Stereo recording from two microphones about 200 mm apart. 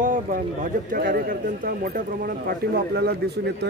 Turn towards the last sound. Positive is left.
turn(degrees=-55)  # may be behind; listen again after turning